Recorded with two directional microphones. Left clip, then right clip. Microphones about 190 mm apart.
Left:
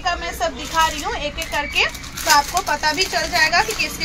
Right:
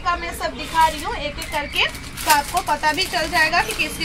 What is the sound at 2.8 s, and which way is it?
Speech, 20° left (ahead or behind).